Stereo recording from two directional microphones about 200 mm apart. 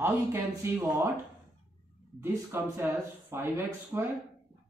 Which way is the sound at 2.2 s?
10° right (ahead or behind).